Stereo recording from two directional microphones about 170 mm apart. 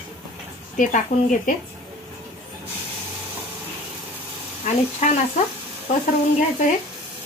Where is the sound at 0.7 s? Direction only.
50° left (ahead or behind).